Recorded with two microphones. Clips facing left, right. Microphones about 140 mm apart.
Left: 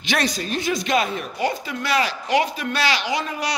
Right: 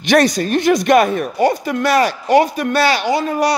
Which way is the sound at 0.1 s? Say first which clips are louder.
Right 10 dB; 50° right (ahead or behind).